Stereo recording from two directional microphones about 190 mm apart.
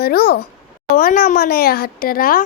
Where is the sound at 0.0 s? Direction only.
55° left (ahead or behind).